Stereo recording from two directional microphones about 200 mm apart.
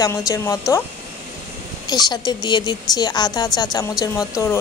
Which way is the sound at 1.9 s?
20° left (ahead or behind).